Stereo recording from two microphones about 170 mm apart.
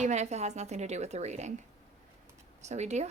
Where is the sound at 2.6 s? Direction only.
40° right (ahead or behind).